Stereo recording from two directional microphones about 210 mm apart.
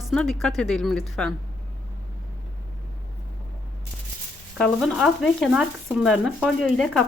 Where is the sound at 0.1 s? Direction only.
Centre (ahead or behind).